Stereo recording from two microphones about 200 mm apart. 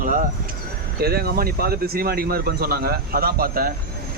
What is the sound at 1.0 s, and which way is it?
Speech, 50° right (ahead or behind).